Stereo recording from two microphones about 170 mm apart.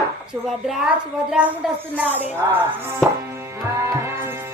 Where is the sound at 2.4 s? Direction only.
20° right (ahead or behind).